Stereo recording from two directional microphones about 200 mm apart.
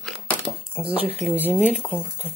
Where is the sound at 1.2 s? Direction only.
10° right (ahead or behind).